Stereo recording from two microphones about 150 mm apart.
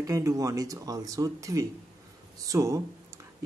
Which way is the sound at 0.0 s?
20° right (ahead or behind).